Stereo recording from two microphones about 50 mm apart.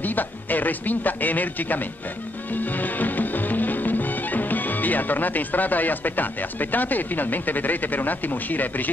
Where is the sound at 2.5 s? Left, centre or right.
Left.